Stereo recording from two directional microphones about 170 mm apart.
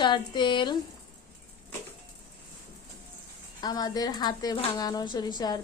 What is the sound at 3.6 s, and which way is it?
A woman's voice, 25° left (ahead or behind).